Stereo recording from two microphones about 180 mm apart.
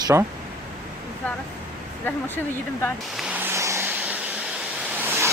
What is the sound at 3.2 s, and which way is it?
Vehicle, 10° right (ahead or behind).